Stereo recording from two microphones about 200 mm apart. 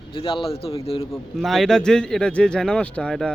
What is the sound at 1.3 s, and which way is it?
Speech, centre (ahead or behind).